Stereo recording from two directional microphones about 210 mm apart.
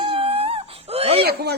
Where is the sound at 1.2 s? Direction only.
50° right (ahead or behind).